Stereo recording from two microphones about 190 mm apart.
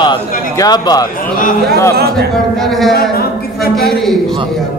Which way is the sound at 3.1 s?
55° left (ahead or behind).